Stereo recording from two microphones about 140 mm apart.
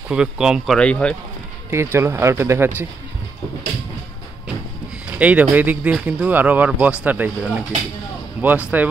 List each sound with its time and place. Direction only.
0.1 s speech: 5° right (ahead or behind)
0.7 s speech: 5° left (ahead or behind)
1.7 s speech: 20° right (ahead or behind)
5.2 s speech: 10° right (ahead or behind)